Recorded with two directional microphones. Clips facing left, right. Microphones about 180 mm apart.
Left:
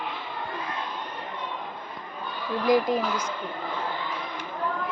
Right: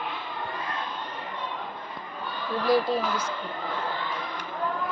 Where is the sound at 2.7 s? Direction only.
15° left (ahead or behind).